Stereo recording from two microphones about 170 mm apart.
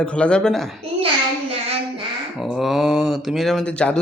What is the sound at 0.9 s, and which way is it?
Child singing, 35° right (ahead or behind).